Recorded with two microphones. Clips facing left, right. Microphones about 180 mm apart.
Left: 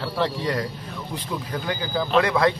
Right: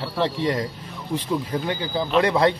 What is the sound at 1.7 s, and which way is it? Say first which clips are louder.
Speech: left 2 dB; 25° right (ahead or behind).